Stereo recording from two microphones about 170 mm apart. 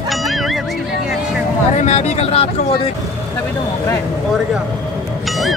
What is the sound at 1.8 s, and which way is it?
Speech, 40° left (ahead or behind).